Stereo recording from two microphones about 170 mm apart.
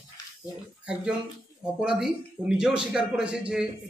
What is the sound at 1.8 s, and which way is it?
A man's voice, 5° right (ahead or behind).